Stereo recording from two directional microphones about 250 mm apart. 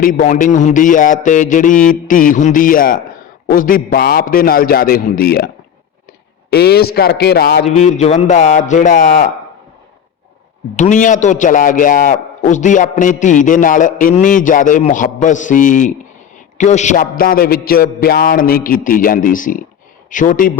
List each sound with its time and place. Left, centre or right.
0.0 s a man's voice: left
6.5 s a man's voice: left
7.6 s a sound: left
10.8 s a man's voice: left